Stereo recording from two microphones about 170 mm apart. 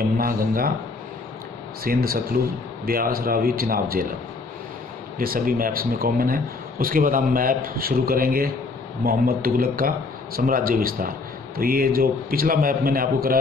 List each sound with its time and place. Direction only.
0.2 s speech: 60° right (ahead or behind)
1.9 s speech: 60° right (ahead or behind)
5.2 s speech: 55° right (ahead or behind)